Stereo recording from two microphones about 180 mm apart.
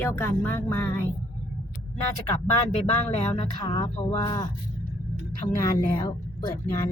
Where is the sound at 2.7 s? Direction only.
40° left (ahead or behind).